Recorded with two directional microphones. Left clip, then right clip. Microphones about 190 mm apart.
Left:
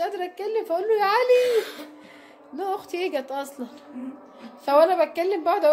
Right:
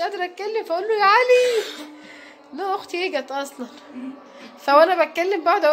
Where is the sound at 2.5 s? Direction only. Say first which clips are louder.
Right 3 dB; 15° left (ahead or behind).